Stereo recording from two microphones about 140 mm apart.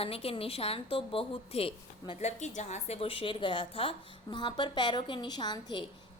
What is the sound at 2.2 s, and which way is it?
A woman's voice, 55° left (ahead or behind).